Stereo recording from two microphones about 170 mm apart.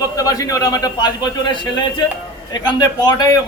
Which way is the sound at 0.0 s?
20° left (ahead or behind).